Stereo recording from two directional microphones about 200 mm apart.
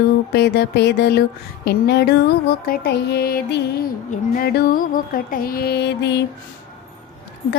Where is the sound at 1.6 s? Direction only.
55° left (ahead or behind).